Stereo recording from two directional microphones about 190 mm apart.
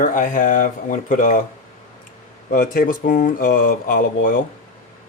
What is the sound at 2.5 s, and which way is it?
Speech, 45° left (ahead or behind).